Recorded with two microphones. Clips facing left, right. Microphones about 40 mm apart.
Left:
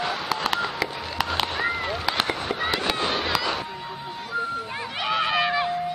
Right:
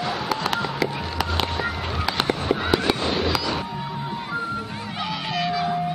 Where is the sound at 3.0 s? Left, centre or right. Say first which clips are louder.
Right 1 dB; centre.